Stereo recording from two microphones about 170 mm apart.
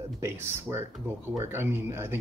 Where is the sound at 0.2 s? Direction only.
15° right (ahead or behind).